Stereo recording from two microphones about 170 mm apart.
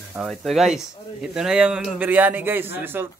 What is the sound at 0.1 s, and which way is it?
Speech, centre (ahead or behind).